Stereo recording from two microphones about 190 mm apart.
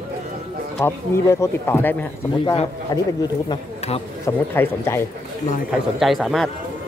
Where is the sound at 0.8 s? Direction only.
15° left (ahead or behind).